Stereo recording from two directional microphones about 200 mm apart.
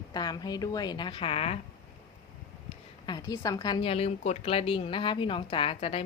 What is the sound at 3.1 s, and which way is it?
A woman's voice, 20° left (ahead or behind).